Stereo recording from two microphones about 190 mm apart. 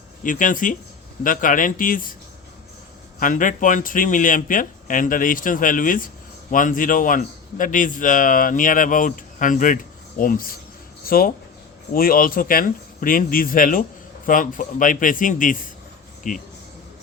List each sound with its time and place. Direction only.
0.2 s a man's voice: 45° left (ahead or behind)
3.2 s a man's voice: 45° left (ahead or behind)